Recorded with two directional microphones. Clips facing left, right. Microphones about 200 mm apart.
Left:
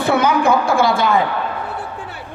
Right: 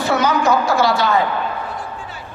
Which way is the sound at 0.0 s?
55° left (ahead or behind).